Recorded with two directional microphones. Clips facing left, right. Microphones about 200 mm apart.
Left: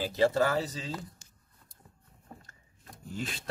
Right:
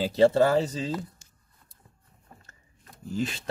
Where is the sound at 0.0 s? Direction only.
30° right (ahead or behind).